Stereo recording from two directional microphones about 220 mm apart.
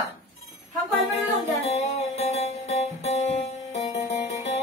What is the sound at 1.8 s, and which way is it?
Music, 30° left (ahead or behind).